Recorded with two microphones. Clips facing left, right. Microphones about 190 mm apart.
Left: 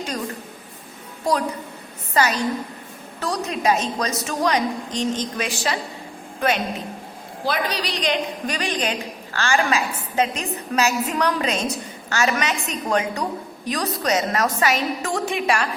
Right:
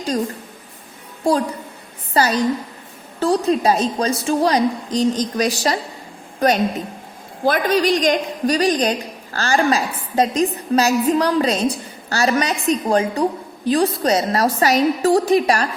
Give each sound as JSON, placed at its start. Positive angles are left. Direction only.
{"t": 1.2, "sound": "a woman's voice", "side_deg": -30}
{"t": 7.4, "sound": "a woman's voice", "side_deg": -50}